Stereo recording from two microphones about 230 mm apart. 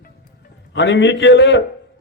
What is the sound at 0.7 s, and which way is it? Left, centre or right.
Speech, left.